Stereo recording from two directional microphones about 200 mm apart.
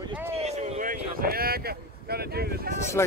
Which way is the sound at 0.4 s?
35° right (ahead or behind).